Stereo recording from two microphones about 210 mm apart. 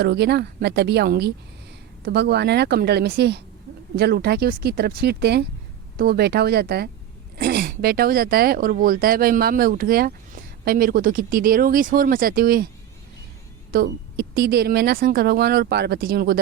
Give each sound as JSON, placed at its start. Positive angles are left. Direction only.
{"t": 0.0, "sound": "speech", "side_deg": -50}
{"t": 13.7, "sound": "speech", "side_deg": -45}